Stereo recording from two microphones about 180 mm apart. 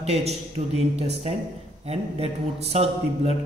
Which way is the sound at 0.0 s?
35° right (ahead or behind).